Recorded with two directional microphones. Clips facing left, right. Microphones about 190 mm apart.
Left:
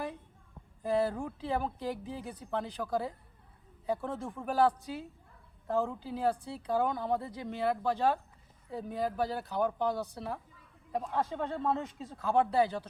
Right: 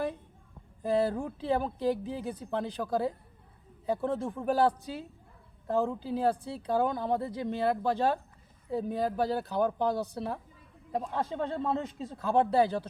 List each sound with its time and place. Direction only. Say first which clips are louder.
0.9 s speech: right 2 dB; 30° right (ahead or behind)